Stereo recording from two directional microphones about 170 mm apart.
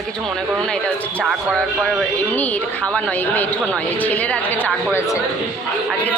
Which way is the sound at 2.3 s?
10° left (ahead or behind).